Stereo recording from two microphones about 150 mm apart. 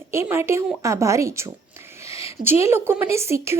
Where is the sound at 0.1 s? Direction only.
15° right (ahead or behind).